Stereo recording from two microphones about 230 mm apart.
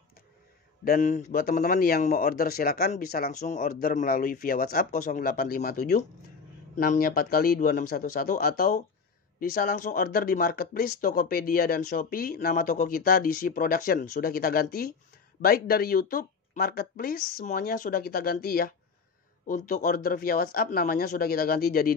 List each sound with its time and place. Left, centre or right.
0.8 s speech: left